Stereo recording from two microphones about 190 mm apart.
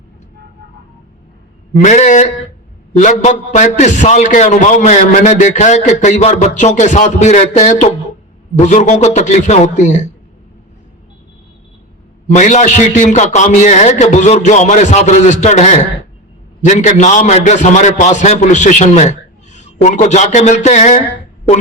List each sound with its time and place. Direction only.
1.7 s a man's voice: 40° left (ahead or behind)
12.3 s a man's voice: 40° left (ahead or behind)